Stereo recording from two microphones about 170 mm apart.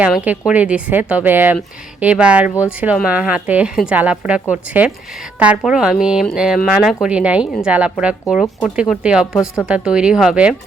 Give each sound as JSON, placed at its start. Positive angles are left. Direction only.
{"t": 0.0, "sound": "speech", "side_deg": -5}